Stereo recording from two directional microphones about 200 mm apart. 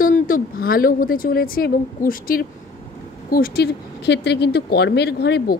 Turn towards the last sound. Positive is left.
turn(degrees=55)  # may be behind; listen again after turning